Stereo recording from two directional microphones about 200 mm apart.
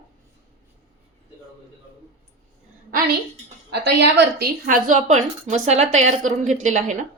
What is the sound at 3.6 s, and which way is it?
A woman's voice, 55° right (ahead or behind).